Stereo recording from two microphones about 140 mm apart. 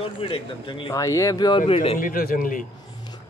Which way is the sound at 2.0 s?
85° left.